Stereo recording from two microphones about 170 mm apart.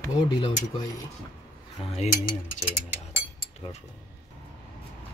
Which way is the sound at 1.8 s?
40° left (ahead or behind).